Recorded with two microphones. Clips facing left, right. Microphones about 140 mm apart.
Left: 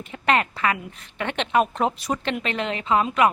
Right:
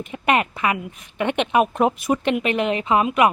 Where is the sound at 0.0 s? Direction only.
15° right (ahead or behind).